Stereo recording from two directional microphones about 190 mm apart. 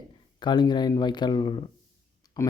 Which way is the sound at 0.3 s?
25° left (ahead or behind).